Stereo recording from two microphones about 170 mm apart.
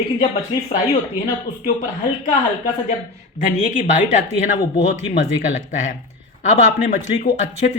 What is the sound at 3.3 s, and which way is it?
Speech, 45° left (ahead or behind).